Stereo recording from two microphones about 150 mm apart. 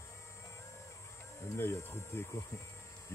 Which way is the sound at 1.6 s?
15° left (ahead or behind).